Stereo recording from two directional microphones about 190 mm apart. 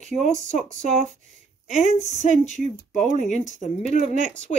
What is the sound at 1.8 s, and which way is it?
A woman's voice, 40° left (ahead or behind).